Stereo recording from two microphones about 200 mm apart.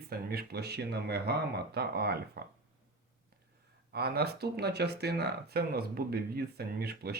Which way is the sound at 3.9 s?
50° right (ahead or behind).